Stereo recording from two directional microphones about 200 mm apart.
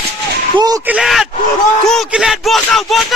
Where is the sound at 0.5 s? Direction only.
20° right (ahead or behind).